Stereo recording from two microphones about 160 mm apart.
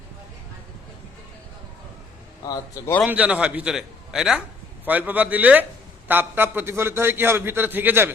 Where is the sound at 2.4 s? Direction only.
20° left (ahead or behind).